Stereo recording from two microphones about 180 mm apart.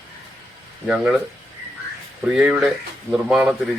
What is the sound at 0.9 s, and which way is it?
Speech, 5° right (ahead or behind).